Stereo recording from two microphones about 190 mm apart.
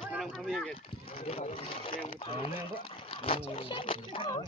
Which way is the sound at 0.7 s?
30° left (ahead or behind).